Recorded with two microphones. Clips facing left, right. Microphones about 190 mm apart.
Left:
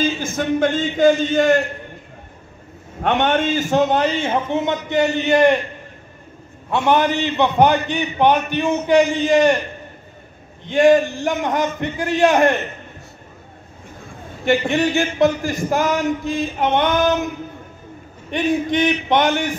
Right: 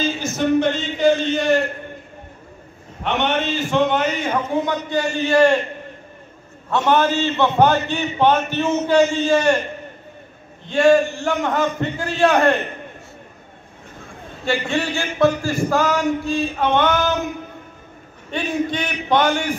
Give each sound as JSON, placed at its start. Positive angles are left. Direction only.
{"t": 0.0, "sound": "a man's voice", "side_deg": 50}
{"t": 3.0, "sound": "speech", "side_deg": 50}
{"t": 6.9, "sound": "a man's voice", "side_deg": 15}
{"t": 10.6, "sound": "a man's voice", "side_deg": 20}
{"t": 14.4, "sound": "speech", "side_deg": 20}
{"t": 18.3, "sound": "speech", "side_deg": 20}